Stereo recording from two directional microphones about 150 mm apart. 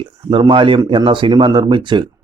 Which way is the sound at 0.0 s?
35° right (ahead or behind).